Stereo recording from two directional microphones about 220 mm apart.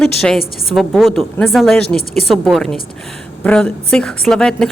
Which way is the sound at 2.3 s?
Centre (ahead or behind).